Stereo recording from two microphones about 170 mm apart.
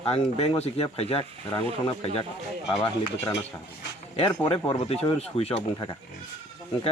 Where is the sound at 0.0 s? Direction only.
35° left (ahead or behind).